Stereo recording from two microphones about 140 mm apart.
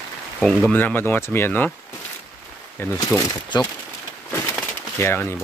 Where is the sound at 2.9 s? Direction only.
25° left (ahead or behind).